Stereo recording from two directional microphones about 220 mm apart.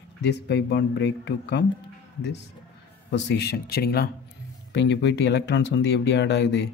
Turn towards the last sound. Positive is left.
turn(degrees=50)  # may be behind; listen again after turning